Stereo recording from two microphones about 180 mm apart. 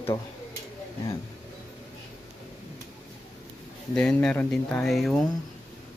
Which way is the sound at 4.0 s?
5° left (ahead or behind).